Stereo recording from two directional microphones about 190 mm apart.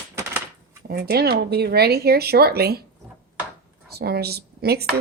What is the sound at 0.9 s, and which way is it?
A woman's voice, 55° right (ahead or behind).